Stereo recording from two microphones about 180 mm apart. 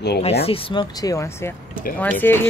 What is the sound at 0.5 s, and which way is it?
Speech, 30° left (ahead or behind).